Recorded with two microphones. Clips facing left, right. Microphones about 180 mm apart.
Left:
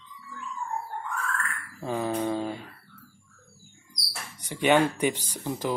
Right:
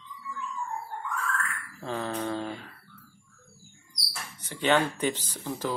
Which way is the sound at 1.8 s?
15° left (ahead or behind).